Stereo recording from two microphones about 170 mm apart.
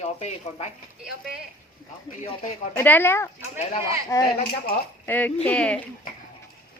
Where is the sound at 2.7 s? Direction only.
10° left (ahead or behind).